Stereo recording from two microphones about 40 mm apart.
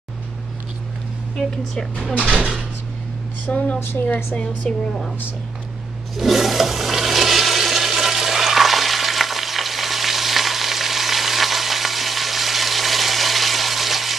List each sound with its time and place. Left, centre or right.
1.4 s speech: centre
2.1 s speech: left
3.4 s a woman's voice: left
4.7 s speech: centre
6.1 s toilet flush: centre